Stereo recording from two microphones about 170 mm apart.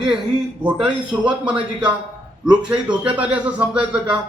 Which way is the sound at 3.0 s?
5° right (ahead or behind).